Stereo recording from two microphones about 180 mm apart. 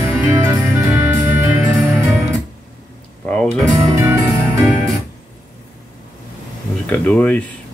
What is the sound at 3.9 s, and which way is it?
Music, 15° right (ahead or behind).